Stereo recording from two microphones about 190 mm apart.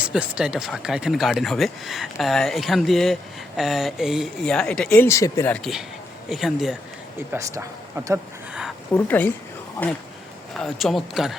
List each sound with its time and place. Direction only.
0.0 s speech: 5° right (ahead or behind)
7.3 s speech: 15° right (ahead or behind)
8.9 s a woman's voice: 10° left (ahead or behind)